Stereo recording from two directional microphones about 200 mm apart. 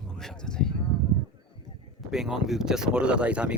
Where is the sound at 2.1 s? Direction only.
Centre (ahead or behind).